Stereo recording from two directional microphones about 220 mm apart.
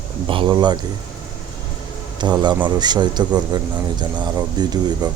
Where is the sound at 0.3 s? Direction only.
20° right (ahead or behind).